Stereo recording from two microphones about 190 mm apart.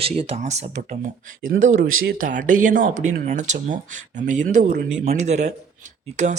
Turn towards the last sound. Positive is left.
turn(degrees=-40)  # may be behind; listen again after turning